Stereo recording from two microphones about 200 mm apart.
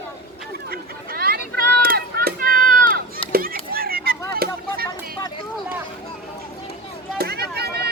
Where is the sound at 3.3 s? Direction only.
50° right (ahead or behind).